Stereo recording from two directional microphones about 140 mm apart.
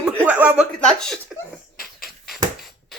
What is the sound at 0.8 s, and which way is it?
Speech, 5° left (ahead or behind).